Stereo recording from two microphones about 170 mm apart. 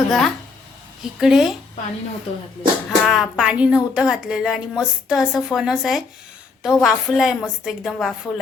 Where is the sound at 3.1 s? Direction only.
Centre (ahead or behind).